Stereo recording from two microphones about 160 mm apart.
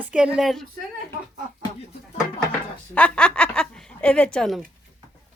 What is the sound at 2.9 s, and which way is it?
A woman's voice, 10° left (ahead or behind).